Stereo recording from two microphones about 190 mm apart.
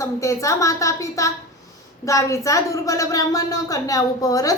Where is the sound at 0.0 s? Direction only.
15° left (ahead or behind).